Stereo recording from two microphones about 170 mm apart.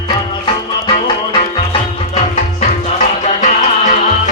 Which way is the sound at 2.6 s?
45° left (ahead or behind).